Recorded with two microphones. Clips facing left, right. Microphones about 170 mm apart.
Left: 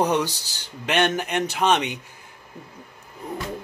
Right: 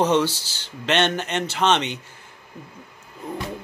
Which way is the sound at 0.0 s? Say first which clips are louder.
Right 2 dB; 15° left (ahead or behind).